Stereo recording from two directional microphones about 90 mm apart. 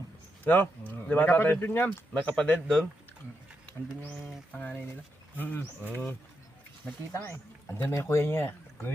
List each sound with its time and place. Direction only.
0.4 s speech: 20° left (ahead or behind)
4.5 s speech: 10° left (ahead or behind)
7.3 s speech: 25° left (ahead or behind)